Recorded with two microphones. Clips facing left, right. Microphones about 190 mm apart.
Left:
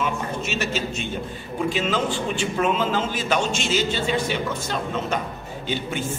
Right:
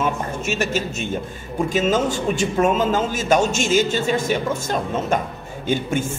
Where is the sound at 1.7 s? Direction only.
45° right (ahead or behind).